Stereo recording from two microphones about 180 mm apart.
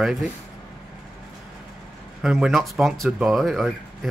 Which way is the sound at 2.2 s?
Centre (ahead or behind).